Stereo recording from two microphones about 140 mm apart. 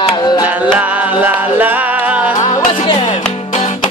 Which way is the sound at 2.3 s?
35° left (ahead or behind).